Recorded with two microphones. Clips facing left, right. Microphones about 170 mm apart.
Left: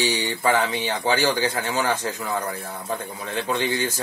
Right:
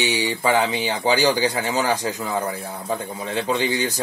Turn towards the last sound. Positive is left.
turn(degrees=-20)  # may be behind; listen again after turning